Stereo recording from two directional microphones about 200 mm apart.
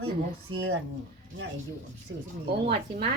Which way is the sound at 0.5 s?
90° right.